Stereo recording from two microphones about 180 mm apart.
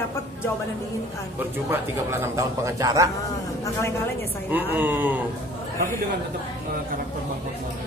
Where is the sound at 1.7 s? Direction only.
15° right (ahead or behind).